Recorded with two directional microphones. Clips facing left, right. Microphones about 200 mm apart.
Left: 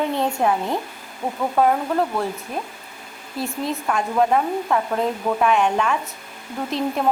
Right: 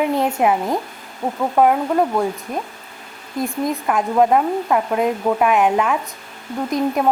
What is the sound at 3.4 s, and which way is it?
Speech, 15° right (ahead or behind).